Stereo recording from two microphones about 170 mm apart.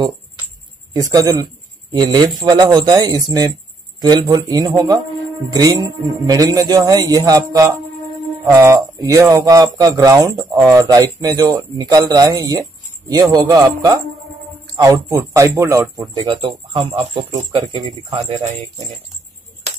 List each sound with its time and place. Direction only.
0.9 s speech: 20° right (ahead or behind); by 18.6 s 35° right (ahead or behind)